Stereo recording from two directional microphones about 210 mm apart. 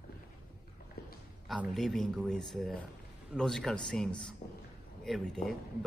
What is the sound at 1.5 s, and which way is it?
A man's voice, centre (ahead or behind).